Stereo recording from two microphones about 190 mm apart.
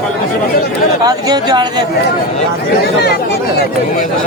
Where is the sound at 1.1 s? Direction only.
20° right (ahead or behind).